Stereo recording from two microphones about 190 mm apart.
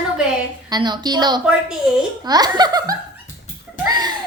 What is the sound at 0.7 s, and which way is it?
A woman's voice, 20° right (ahead or behind).